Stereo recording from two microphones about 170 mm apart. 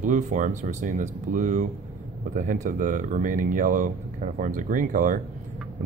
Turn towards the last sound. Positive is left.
turn(degrees=-50)  # may be behind; listen again after turning